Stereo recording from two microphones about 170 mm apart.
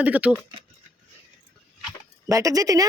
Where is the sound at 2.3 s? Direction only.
20° right (ahead or behind).